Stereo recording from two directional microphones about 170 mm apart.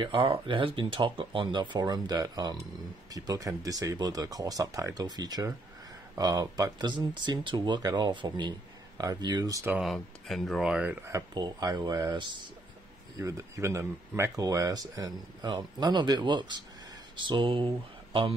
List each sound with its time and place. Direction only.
0.0 s speech: 30° right (ahead or behind)
9.8 s speech: centre (ahead or behind); by 18.3 s 30° right (ahead or behind)